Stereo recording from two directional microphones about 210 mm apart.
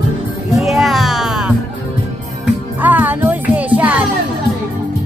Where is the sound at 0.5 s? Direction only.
Centre (ahead or behind).